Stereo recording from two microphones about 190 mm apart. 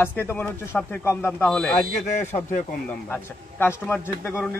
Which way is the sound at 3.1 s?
10° left (ahead or behind).